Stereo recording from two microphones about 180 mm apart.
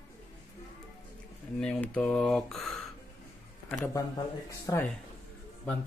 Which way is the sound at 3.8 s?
20° left (ahead or behind).